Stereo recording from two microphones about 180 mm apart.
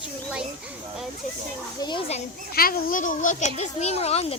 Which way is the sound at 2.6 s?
55° left (ahead or behind).